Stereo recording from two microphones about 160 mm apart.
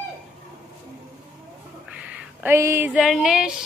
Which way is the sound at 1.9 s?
10° right (ahead or behind).